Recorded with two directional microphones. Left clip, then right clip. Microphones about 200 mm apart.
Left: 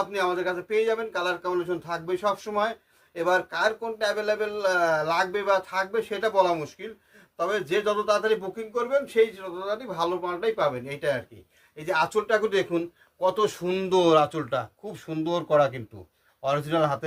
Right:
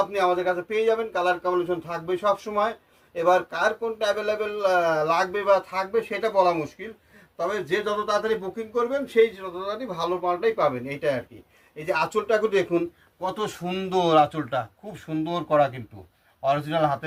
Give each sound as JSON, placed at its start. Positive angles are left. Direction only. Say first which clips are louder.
{"t": 0.1, "sound": "speech", "louder": "right 4 dB", "side_deg": 40}